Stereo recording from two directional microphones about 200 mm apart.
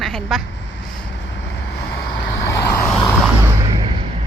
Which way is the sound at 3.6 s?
25° right (ahead or behind).